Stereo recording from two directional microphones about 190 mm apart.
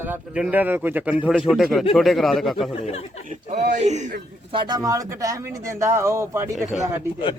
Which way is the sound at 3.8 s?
40° right (ahead or behind).